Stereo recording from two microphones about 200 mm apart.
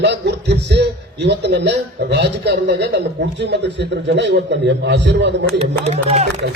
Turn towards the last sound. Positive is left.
turn(degrees=-35)  # may be behind; listen again after turning